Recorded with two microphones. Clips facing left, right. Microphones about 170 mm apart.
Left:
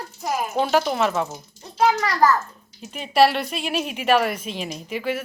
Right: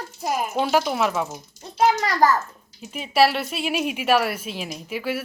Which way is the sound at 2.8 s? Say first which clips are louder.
Left 2 dB; 5° right (ahead or behind).